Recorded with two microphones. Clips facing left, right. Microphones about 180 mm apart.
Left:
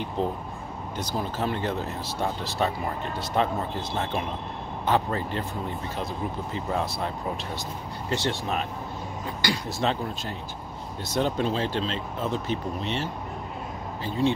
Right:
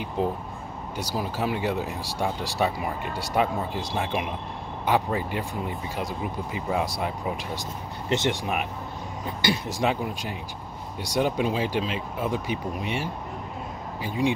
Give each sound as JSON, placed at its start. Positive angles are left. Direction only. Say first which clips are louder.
{"t": 0.2, "sound": "speech", "louder": "right 2 dB", "side_deg": -10}